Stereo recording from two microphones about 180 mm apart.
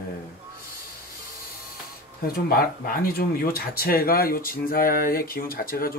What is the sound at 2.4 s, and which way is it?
Speech, 55° left (ahead or behind).